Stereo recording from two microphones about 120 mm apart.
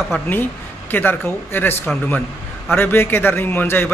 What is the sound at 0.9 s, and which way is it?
A man's voice, 15° left (ahead or behind).